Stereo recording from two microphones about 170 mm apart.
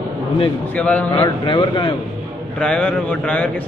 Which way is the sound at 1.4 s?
25° left (ahead or behind).